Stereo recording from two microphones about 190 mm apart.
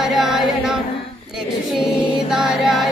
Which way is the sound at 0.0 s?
Centre (ahead or behind).